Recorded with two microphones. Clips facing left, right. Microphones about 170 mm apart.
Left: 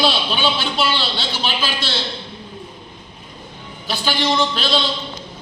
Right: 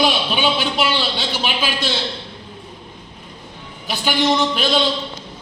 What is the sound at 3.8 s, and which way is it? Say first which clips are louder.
Speech: right 2 dB; 15° right (ahead or behind).